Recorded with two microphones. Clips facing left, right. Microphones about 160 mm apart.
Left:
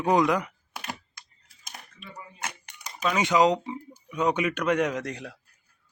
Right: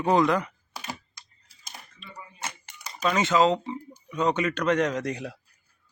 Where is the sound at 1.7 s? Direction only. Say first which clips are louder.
Left 1 dB; centre (ahead or behind).